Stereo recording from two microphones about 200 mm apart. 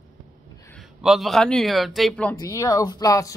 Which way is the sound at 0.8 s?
Centre (ahead or behind).